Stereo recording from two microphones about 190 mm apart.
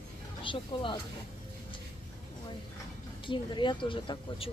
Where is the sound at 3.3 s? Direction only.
25° left (ahead or behind).